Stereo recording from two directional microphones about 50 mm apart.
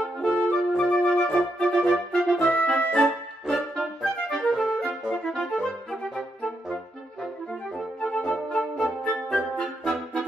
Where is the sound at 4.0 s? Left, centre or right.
Centre.